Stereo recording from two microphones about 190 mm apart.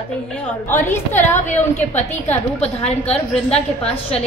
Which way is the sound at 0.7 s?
10° left (ahead or behind).